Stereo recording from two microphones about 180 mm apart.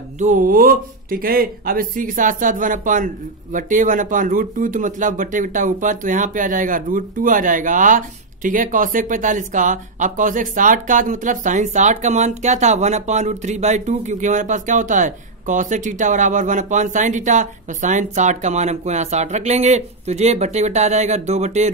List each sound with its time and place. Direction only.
0.2 s speech: 45° right (ahead or behind)